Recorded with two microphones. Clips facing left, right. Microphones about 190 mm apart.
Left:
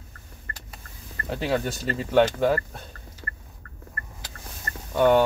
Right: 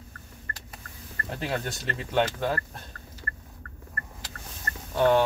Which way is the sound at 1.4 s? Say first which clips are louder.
Left 6 dB; 5° left (ahead or behind).